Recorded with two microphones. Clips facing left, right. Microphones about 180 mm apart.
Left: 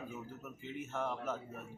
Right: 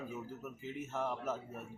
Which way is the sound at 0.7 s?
5° right (ahead or behind).